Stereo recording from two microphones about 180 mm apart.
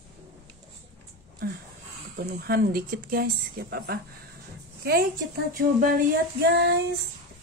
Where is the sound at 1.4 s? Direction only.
55° right (ahead or behind).